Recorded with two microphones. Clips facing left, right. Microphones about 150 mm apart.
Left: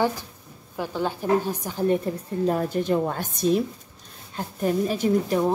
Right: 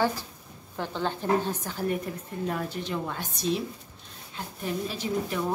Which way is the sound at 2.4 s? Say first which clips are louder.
Left 9 dB; 40° left (ahead or behind).